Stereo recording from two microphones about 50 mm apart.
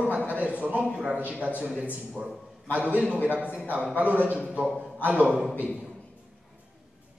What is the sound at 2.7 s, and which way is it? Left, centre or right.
A man's voice, right.